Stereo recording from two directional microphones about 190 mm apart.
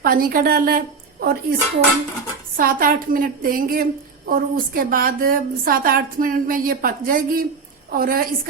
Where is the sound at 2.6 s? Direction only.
50° right (ahead or behind).